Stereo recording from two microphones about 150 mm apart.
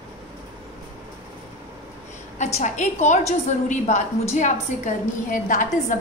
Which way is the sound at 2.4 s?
50° left (ahead or behind).